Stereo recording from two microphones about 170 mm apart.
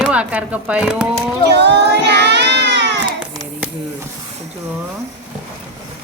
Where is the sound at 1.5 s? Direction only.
85° right.